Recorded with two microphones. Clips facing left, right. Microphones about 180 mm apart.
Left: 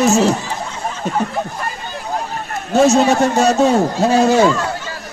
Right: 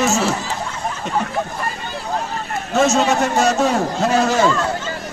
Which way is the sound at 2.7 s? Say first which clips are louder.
Left 4 dB; 35° left (ahead or behind).